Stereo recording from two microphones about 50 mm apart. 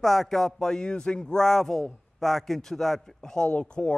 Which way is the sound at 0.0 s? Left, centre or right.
Centre.